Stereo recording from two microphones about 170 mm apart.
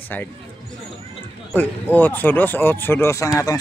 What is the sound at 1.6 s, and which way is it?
Speech, 10° left (ahead or behind).